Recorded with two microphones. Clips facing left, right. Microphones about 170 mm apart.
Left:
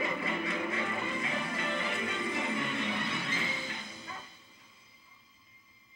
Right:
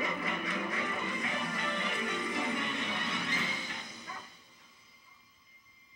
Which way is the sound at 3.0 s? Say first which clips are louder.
Left 1 dB; 25° left (ahead or behind).